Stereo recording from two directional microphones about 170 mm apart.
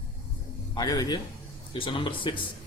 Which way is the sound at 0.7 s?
25° left (ahead or behind).